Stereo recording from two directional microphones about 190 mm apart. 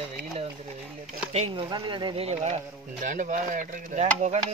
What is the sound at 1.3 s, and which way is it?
Speech, 30° right (ahead or behind).